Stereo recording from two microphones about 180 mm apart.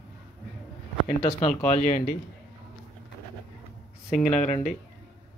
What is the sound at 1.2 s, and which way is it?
Speech, 25° left (ahead or behind).